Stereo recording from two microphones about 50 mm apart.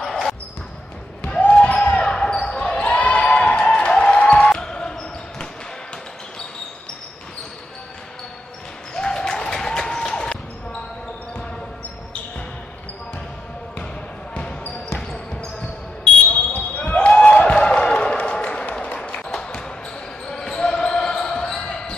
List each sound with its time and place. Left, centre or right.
0.0 s basketball bounce: centre
1.4 s basketball bounce: left
8.9 s basketball bounce: centre
14.3 s a sound: left
14.9 s basketball bounce: centre
16.3 s basketball bounce: left
16.7 s a sound: left
19.2 s basketball bounce: centre